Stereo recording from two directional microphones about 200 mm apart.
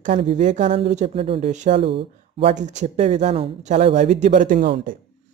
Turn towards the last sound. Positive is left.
turn(degrees=-40)  # may be behind; listen again after turning